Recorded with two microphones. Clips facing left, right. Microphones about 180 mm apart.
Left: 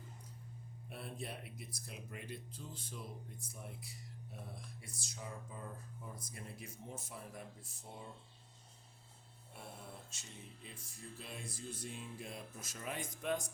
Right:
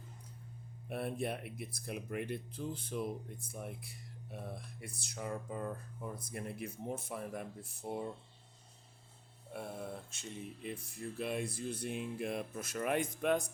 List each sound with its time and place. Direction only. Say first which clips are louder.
0.9 s speech: right 9 dB; 60° right (ahead or behind)
10.1 s speech: right 10 dB; 60° right (ahead or behind)